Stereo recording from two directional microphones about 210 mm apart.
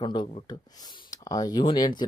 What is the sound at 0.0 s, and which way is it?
Speech, 20° left (ahead or behind).